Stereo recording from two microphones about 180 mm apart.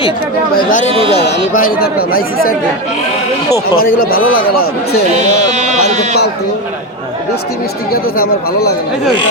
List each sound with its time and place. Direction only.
0.5 s speech: 45° left (ahead or behind)
5.5 s a sound: 40° right (ahead or behind)
7.9 s speech: 55° left (ahead or behind)